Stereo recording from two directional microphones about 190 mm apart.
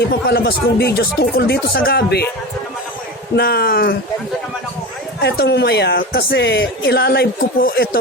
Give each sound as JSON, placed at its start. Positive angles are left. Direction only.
{"t": 0.0, "sound": "speech", "side_deg": 55}
{"t": 3.3, "sound": "speech", "side_deg": 55}
{"t": 5.2, "sound": "speech", "side_deg": 60}